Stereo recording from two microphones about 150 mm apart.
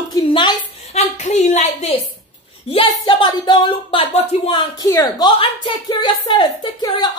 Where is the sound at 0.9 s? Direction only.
50° left (ahead or behind).